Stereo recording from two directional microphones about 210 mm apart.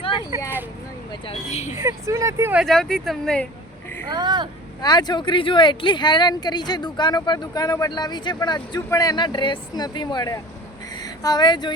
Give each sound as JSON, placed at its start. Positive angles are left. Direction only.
{"t": 0.3, "sound": "speech", "side_deg": -15}
{"t": 1.3, "sound": "speech", "side_deg": 30}
{"t": 1.7, "sound": "speech", "side_deg": -15}
{"t": 4.1, "sound": "speech", "side_deg": -20}
{"t": 4.8, "sound": "speech", "side_deg": 20}